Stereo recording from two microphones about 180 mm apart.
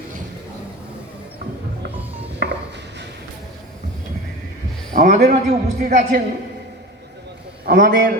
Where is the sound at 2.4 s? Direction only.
60° right (ahead or behind).